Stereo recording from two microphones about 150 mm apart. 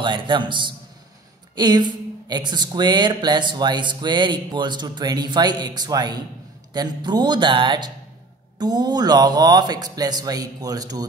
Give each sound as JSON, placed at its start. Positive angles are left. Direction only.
{"t": 0.0, "sound": "a man's voice", "side_deg": -30}